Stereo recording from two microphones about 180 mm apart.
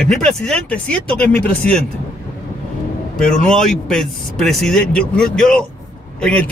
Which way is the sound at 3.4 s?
5° left (ahead or behind).